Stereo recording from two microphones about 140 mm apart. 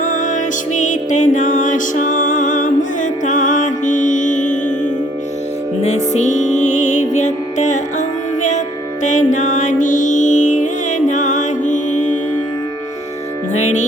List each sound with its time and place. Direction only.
0.0 s music: 65° left (ahead or behind)
5.8 s music: 55° left (ahead or behind)
13.5 s music: 55° left (ahead or behind)